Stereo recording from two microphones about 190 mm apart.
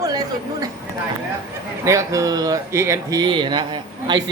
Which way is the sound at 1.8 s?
15° right (ahead or behind).